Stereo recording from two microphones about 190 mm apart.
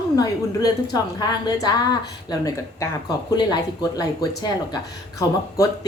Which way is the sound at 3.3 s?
20° left (ahead or behind).